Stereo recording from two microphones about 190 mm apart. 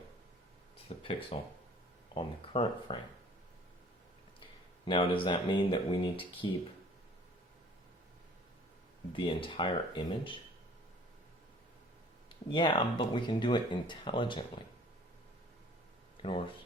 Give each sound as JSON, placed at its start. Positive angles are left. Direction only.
{"t": 0.9, "sound": "speech", "side_deg": 30}
{"t": 4.9, "sound": "speech", "side_deg": 25}
{"t": 9.1, "sound": "speech", "side_deg": 25}
{"t": 12.5, "sound": "speech", "side_deg": 25}
{"t": 16.2, "sound": "speech", "side_deg": 30}